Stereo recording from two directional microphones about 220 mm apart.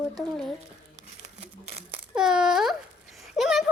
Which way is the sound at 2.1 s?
5° right (ahead or behind).